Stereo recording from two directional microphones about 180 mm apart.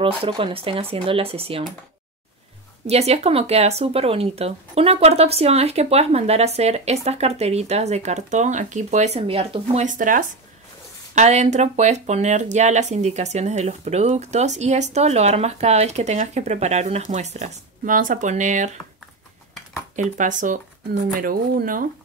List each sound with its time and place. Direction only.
0.0 s speech: 30° right (ahead or behind)
2.9 s speech: 35° right (ahead or behind)
9.8 s speech: 45° right (ahead or behind)
20.0 s speech: 45° right (ahead or behind)